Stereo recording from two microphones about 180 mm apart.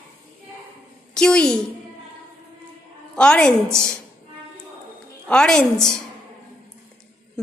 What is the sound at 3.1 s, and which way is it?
Speech, 5° left (ahead or behind).